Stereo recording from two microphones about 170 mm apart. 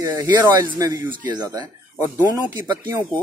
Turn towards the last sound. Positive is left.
turn(degrees=-25)  # may be behind; listen again after turning